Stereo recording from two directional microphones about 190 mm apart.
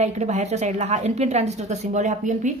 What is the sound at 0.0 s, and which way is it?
A woman's voice, 35° right (ahead or behind).